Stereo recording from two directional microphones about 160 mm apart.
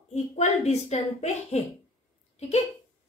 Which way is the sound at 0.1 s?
45° left (ahead or behind).